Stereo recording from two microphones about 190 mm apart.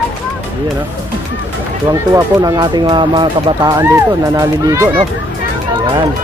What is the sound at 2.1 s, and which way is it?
Speech, 20° right (ahead or behind).